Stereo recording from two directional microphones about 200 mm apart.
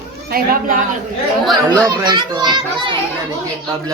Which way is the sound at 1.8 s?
20° right (ahead or behind).